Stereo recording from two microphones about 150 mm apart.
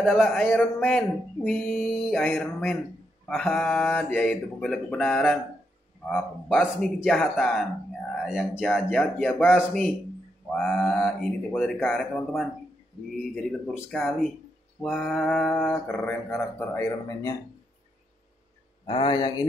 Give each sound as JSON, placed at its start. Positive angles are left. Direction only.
{"t": 0.0, "sound": "mantra", "side_deg": 0}
{"t": 18.9, "sound": "speech", "side_deg": 30}